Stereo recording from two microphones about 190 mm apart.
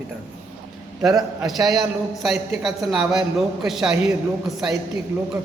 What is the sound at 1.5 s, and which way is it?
A man's voice, centre (ahead or behind).